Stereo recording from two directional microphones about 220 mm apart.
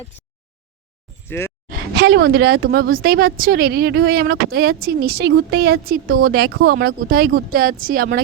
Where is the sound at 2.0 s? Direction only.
50° right (ahead or behind).